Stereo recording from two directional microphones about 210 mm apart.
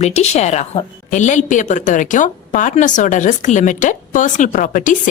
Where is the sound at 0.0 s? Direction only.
30° left (ahead or behind).